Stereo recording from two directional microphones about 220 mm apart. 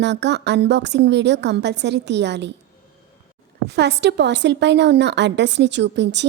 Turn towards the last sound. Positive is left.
turn(degrees=-55)  # may be behind; listen again after turning